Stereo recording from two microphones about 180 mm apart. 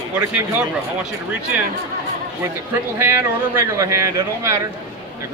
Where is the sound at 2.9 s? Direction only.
15° right (ahead or behind).